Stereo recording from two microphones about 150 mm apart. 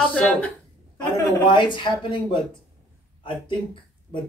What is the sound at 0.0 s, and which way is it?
Speech, 5° left (ahead or behind).